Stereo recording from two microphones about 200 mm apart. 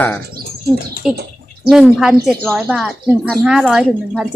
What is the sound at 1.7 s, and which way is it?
A woman's voice, centre (ahead or behind).